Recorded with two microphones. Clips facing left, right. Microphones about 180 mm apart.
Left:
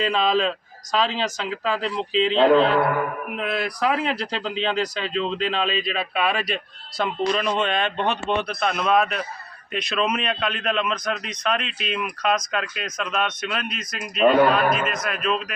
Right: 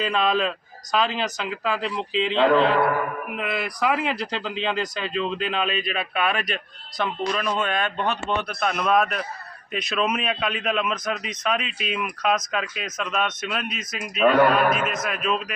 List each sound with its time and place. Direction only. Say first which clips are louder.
0.1 s a man's voice: left 1 dB; centre (ahead or behind)
2.3 s a man's voice: left 2 dB; 30° left (ahead or behind)
3.3 s a man's voice: left 3 dB; 5° right (ahead or behind)
7.0 s speech: left 3 dB; 20° left (ahead or behind)
8.4 s a man's voice: left 1 dB; centre (ahead or behind)